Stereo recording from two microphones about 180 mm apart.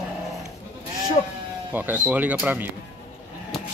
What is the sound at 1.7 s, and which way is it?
Speech, 10° right (ahead or behind).